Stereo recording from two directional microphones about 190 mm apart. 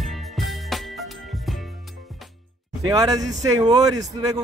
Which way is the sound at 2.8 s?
20° right (ahead or behind).